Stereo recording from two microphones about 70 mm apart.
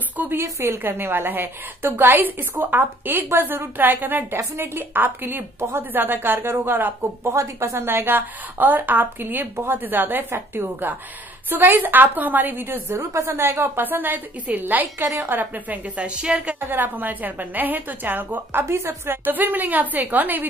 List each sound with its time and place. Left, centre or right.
0.2 s a woman's voice: right
7.3 s a woman's voice: right; by 16.5 s centre
16.5 s a woman's voice: right
19.2 s a woman's voice: right